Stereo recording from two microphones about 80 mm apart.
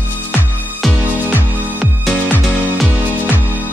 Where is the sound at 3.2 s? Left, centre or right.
Right.